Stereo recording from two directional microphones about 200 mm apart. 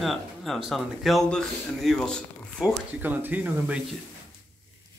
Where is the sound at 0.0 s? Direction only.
Centre (ahead or behind).